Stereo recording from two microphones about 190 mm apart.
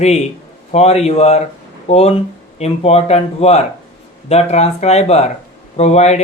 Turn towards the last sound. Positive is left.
turn(degrees=35)  # may be behind; listen again after turning